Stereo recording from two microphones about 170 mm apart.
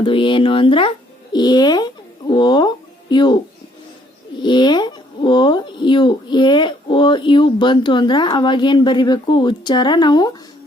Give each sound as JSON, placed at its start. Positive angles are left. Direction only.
{"t": 0.0, "sound": "speech", "side_deg": 30}
{"t": 4.4, "sound": "speech", "side_deg": 25}